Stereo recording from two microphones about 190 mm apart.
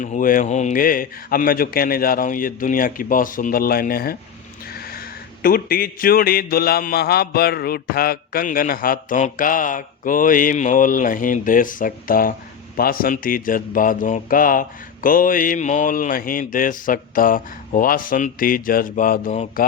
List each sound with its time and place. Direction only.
0.0 s a man's voice: 45° left (ahead or behind)